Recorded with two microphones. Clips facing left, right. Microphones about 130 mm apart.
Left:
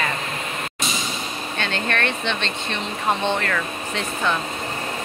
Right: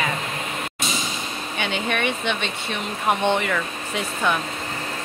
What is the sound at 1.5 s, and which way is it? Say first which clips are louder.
Speech: even; 10° right (ahead or behind).